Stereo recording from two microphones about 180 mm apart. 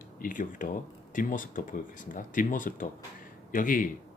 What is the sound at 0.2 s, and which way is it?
Speech, 50° left (ahead or behind).